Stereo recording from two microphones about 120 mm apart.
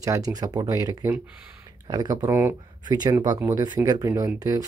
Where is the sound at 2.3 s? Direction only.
15° right (ahead or behind).